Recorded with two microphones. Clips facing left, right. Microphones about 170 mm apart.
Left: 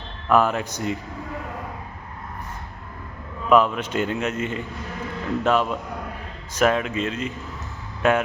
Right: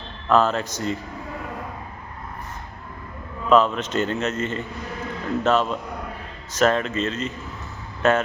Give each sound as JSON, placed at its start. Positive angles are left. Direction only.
{"t": 0.3, "sound": "a man's voice", "side_deg": 15}
{"t": 3.5, "sound": "a man's voice", "side_deg": 10}